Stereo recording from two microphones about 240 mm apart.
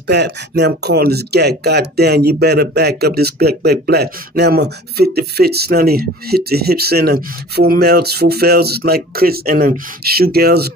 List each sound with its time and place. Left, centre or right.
0.0 s speech: right